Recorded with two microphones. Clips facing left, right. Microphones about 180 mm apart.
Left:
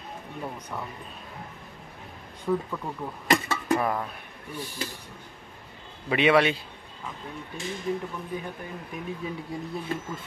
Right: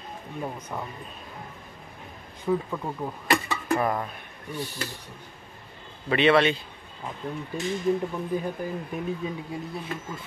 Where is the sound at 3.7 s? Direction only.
Centre (ahead or behind).